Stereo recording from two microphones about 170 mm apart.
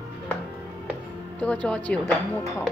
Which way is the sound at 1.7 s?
5° left (ahead or behind).